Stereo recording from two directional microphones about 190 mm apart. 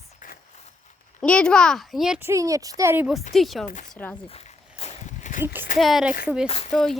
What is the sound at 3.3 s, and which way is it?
Speech, centre (ahead or behind).